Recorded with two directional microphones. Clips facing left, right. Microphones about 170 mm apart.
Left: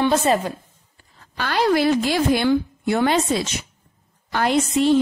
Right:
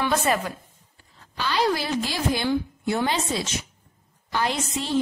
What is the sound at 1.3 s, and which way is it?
A woman's voice, 55° left (ahead or behind).